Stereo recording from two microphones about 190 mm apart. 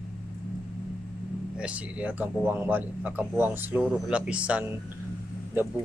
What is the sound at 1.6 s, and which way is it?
A man's voice, 5° right (ahead or behind).